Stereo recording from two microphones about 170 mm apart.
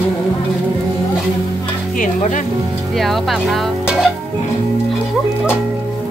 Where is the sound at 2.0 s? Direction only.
50° left (ahead or behind).